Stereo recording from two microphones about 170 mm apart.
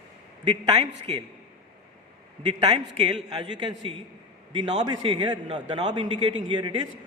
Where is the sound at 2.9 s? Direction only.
30° right (ahead or behind).